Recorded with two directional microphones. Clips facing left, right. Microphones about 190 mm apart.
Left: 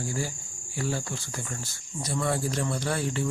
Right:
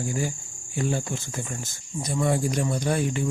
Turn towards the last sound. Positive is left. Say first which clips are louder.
# right 4 dB
turn(degrees=-15)  # may be behind; listen again after turning